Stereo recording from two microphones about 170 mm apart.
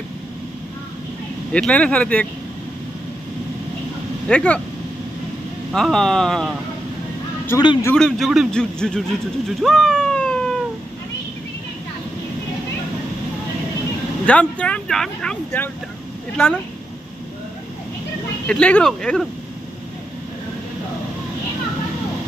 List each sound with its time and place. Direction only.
1.5 s speech: 5° left (ahead or behind)
4.3 s a man's voice: 5° left (ahead or behind)
5.7 s a man's voice: centre (ahead or behind)
7.4 s a man's voice: 25° left (ahead or behind)
7.8 s a man's voice: 5° left (ahead or behind)
9.5 s a sound: centre (ahead or behind)
14.2 s speech: 5° left (ahead or behind)
18.5 s a man's voice: 5° left (ahead or behind)